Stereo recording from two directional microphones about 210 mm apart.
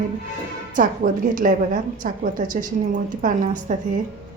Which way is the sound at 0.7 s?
40° right (ahead or behind).